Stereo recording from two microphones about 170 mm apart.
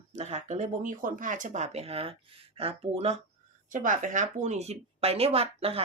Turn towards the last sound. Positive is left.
turn(degrees=-35)  # may be behind; listen again after turning